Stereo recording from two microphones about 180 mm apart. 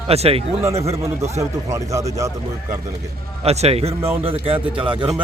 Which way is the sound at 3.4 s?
35° right (ahead or behind).